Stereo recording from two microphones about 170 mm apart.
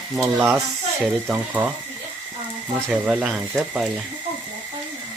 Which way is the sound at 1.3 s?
5° right (ahead or behind).